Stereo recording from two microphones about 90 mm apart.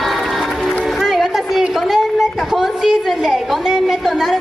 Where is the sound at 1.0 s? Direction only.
Centre (ahead or behind).